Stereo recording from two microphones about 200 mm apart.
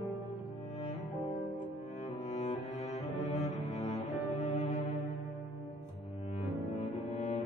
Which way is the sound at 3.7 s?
35° left (ahead or behind).